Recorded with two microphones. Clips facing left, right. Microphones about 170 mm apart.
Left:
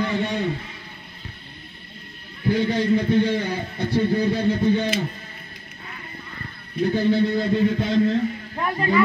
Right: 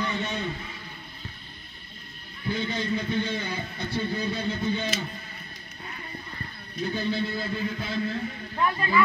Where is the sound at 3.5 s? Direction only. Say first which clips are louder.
Left 7 dB; 30° left (ahead or behind).